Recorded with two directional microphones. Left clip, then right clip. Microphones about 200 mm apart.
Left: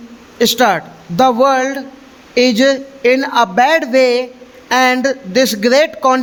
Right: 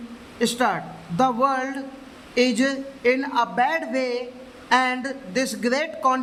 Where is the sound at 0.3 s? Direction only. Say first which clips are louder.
Left 10 dB; 45° left (ahead or behind).